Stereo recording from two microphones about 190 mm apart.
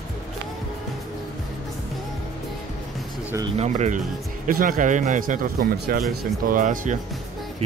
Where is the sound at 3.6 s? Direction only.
35° right (ahead or behind).